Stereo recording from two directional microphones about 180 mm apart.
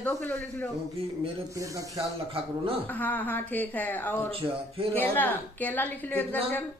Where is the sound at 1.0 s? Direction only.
30° right (ahead or behind).